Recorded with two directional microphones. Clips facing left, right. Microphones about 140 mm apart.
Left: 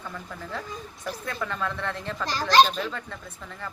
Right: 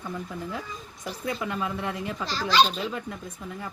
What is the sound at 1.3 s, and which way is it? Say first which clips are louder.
Speech: right 2 dB; 15° right (ahead or behind).